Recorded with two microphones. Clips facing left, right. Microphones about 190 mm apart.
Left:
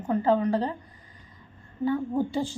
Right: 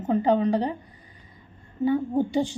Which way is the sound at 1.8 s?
20° right (ahead or behind).